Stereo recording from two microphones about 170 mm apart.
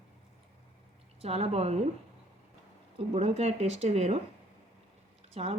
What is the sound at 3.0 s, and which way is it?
Speech, 35° right (ahead or behind).